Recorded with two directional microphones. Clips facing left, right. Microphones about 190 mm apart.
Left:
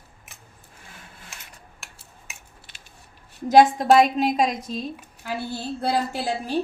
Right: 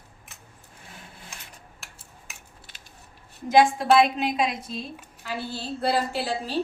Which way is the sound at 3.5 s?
40° left (ahead or behind).